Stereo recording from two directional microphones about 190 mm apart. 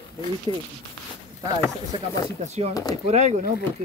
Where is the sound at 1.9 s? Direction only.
25° right (ahead or behind).